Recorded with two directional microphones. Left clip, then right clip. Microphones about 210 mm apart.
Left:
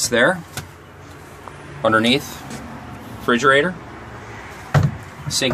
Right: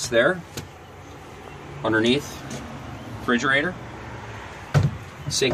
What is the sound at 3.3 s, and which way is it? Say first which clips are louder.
Speech: left 6 dB; 35° left (ahead or behind).